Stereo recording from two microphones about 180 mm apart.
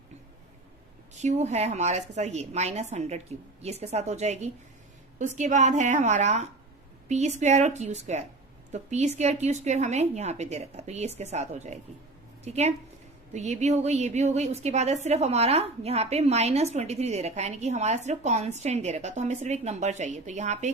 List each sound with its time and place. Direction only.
1.2 s a woman's voice: 40° right (ahead or behind)